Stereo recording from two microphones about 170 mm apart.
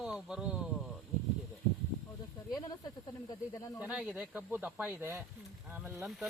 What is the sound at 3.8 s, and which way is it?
Speech, 10° right (ahead or behind).